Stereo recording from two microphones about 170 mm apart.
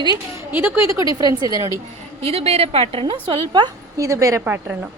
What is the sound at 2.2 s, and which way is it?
A woman's voice, 35° right (ahead or behind).